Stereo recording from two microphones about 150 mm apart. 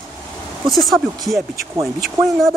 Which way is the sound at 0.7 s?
Centre (ahead or behind).